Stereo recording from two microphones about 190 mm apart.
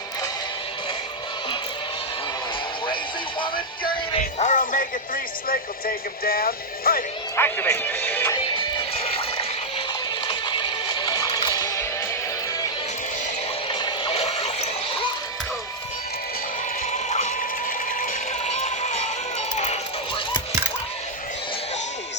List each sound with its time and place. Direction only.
3.4 s music: 25° left (ahead or behind)
4.2 s speech: 40° left (ahead or behind)
7.3 s speech: 10° left (ahead or behind)
8.8 s music: 30° left (ahead or behind)
13.7 s music: 25° left (ahead or behind)
17.1 s a sound: 40° left (ahead or behind)